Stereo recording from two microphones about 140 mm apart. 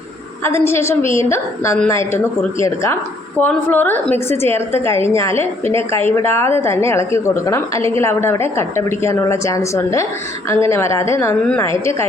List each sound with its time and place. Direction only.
0.4 s a woman's voice: 15° left (ahead or behind)